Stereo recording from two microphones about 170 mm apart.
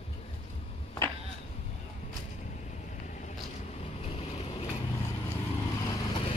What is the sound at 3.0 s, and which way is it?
Vehicle, 45° left (ahead or behind).